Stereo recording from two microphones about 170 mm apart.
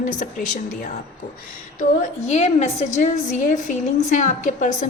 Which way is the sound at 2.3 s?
40° left (ahead or behind).